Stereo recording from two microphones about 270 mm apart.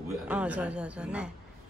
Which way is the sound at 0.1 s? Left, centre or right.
Centre.